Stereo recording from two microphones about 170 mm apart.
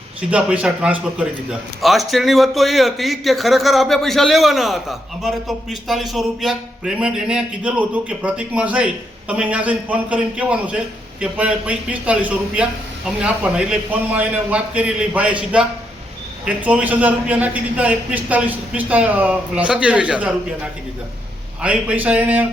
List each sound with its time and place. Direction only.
0.3 s a man's voice: 5° right (ahead or behind)
21.6 s a man's voice: 5° right (ahead or behind)